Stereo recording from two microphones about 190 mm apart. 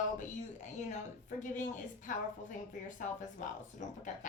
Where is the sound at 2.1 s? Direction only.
40° left (ahead or behind).